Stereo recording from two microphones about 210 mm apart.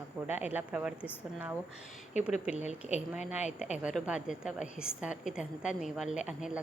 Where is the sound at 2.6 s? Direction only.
30° left (ahead or behind).